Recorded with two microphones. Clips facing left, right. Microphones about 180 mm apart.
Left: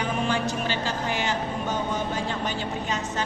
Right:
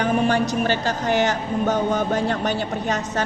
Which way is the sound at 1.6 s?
65° right (ahead or behind).